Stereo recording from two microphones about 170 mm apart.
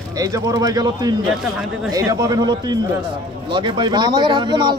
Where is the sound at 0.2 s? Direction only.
20° right (ahead or behind).